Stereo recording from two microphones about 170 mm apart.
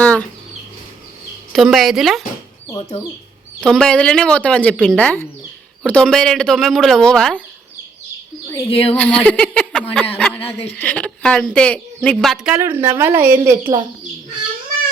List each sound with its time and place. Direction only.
0.0 s a sound: 10° left (ahead or behind)
1.5 s speech: centre (ahead or behind)
3.6 s speech: 5° left (ahead or behind)
8.4 s speech: 15° left (ahead or behind)
8.7 s speech: 35° left (ahead or behind)
9.0 s speech: 5° left (ahead or behind)
12.5 s a woman's voice: 15° right (ahead or behind)